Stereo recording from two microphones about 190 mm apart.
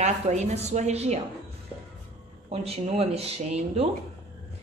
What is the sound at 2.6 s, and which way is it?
A woman's voice, 30° right (ahead or behind).